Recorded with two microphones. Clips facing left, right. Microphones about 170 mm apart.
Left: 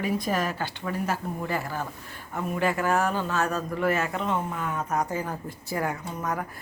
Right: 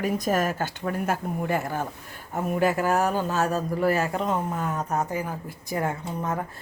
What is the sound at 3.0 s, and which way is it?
Speech, 40° right (ahead or behind).